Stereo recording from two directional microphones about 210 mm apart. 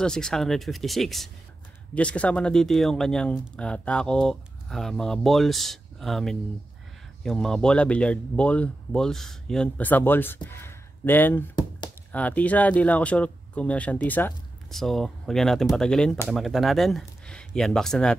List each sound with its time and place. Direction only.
0.0 s speech: 5° left (ahead or behind)